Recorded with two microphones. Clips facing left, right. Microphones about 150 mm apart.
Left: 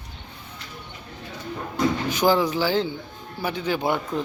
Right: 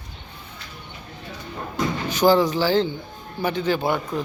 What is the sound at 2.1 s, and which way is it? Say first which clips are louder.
Speech: right 6 dB; 10° left (ahead or behind).